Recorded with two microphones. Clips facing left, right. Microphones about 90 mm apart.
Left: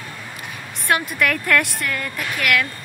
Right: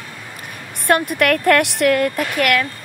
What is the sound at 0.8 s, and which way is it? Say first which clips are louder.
A woman's voice: right 4 dB; 55° right (ahead or behind).